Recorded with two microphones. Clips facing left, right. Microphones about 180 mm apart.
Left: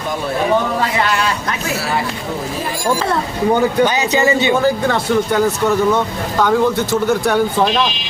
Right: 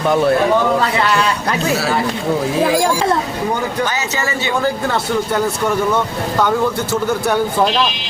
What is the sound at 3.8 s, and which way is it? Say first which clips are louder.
Speech: left 6 dB; 20° left (ahead or behind).